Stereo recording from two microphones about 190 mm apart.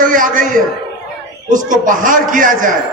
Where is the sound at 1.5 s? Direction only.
45° right (ahead or behind).